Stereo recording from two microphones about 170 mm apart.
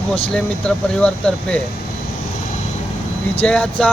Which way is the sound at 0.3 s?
5° left (ahead or behind).